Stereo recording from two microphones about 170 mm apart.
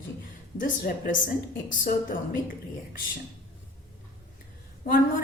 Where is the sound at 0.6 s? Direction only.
55° left (ahead or behind).